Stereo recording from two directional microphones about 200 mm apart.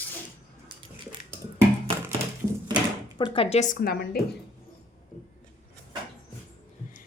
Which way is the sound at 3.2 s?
25° left (ahead or behind).